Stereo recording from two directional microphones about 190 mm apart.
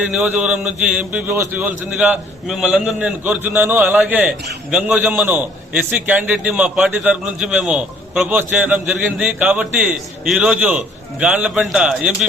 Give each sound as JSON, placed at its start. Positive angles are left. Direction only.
{"t": 0.0, "sound": "speech", "side_deg": -5}